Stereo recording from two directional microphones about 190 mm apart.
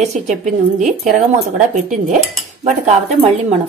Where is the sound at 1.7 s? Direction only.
40° right (ahead or behind).